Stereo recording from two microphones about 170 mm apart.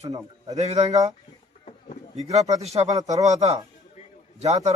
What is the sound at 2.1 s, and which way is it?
Speech, 40° right (ahead or behind).